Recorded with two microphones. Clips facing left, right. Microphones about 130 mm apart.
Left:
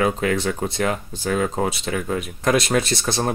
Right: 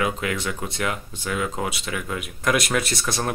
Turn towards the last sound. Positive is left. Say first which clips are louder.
# left 4 dB
turn(degrees=30)  # may be behind; listen again after turning